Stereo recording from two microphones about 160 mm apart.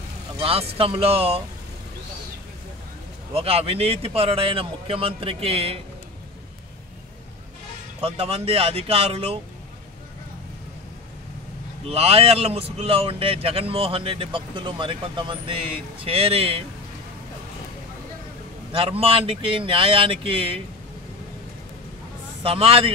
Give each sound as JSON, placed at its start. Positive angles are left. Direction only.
{"t": 0.4, "sound": "speech", "side_deg": -35}
{"t": 3.3, "sound": "speech", "side_deg": -35}
{"t": 8.0, "sound": "speech", "side_deg": -35}
{"t": 11.8, "sound": "speech", "side_deg": -40}
{"t": 18.7, "sound": "speech", "side_deg": -35}
{"t": 22.4, "sound": "speech", "side_deg": -35}